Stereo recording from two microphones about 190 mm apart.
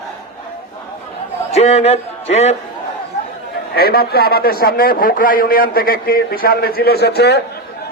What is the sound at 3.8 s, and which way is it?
A man's voice, 55° left (ahead or behind).